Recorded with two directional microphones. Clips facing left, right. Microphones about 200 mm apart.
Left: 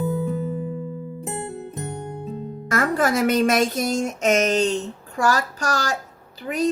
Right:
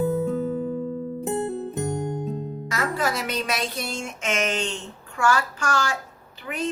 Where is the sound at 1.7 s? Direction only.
Centre (ahead or behind).